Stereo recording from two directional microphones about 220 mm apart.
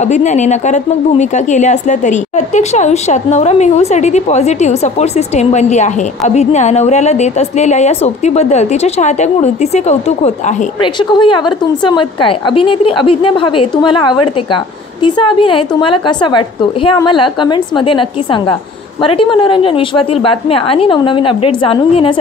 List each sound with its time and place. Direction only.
0.0 s a woman's voice: 30° left (ahead or behind)